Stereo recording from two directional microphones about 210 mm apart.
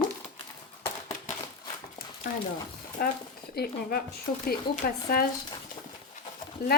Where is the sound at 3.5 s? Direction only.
50° left (ahead or behind).